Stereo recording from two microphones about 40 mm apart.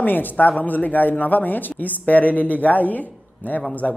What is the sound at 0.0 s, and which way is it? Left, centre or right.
A man's voice, left.